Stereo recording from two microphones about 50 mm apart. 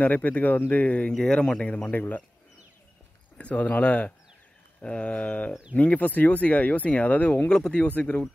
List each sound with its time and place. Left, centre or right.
0.0 s speech: left
1.1 s speech: centre
1.9 s speech: left
3.3 s speech: left
7.5 s speech: centre
7.8 s speech: left